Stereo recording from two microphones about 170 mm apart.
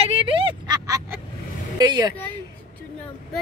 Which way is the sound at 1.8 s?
25° right (ahead or behind).